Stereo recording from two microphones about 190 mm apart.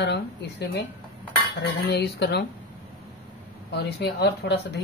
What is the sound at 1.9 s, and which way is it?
Speech, 60° left (ahead or behind).